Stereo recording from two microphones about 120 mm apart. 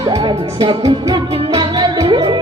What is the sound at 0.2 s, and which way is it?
Speech, 45° right (ahead or behind).